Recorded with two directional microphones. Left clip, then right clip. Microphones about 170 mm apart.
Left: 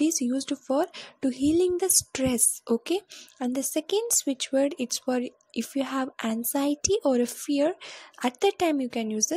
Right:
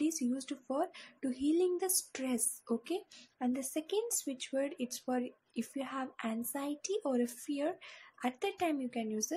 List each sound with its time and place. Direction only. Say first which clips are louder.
0.0 s speech: left 9 dB; 45° left (ahead or behind)